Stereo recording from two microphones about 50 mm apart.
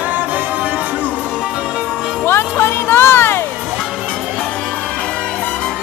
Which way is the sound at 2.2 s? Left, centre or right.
Left.